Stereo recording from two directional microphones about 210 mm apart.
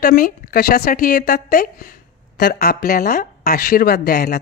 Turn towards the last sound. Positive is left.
turn(degrees=45)  # may be behind; listen again after turning